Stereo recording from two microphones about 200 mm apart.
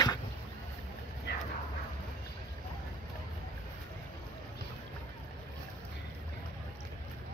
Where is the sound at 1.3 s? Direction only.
55° left (ahead or behind).